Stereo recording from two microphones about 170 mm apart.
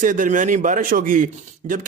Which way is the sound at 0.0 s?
50° right (ahead or behind).